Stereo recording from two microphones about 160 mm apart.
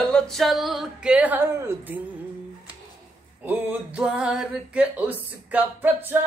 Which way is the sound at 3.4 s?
10° right (ahead or behind).